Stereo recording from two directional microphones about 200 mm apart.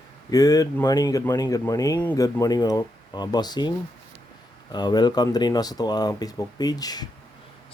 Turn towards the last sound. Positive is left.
turn(degrees=20)  # may be behind; listen again after turning